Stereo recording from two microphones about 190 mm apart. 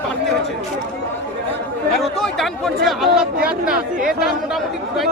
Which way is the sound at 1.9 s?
Centre (ahead or behind).